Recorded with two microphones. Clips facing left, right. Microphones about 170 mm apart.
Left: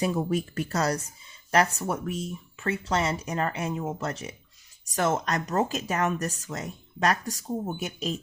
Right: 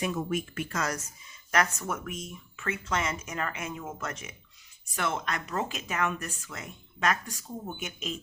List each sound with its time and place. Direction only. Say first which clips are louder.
0.0 s speech: left 4 dB; 35° left (ahead or behind)